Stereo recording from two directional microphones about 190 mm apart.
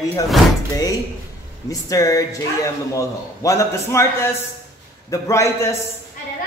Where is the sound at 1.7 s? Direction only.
20° left (ahead or behind).